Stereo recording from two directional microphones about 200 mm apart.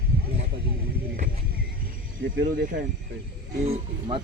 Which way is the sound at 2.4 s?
45° right (ahead or behind).